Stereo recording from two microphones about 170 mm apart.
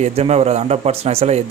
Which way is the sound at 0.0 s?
40° right (ahead or behind).